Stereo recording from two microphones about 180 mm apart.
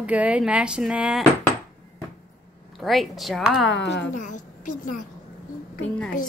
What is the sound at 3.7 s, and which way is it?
Speech, 80° left.